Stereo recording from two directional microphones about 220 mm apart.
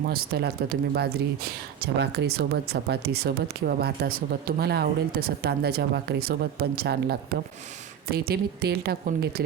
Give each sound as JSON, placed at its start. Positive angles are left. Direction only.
{"t": 0.1, "sound": "speech", "side_deg": -45}